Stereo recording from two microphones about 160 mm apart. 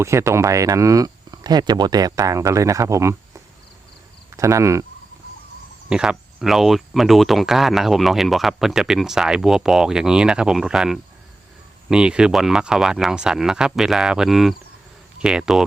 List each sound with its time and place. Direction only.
0.0 s speech: 15° right (ahead or behind)
5.9 s speech: 5° right (ahead or behind)